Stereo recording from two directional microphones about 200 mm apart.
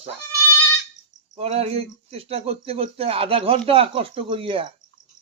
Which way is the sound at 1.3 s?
30° right (ahead or behind).